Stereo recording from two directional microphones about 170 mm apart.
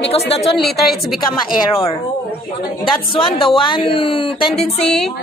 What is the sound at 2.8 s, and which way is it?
Speech, 30° left (ahead or behind).